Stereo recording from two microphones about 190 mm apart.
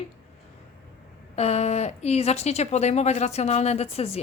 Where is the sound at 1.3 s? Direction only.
35° left (ahead or behind).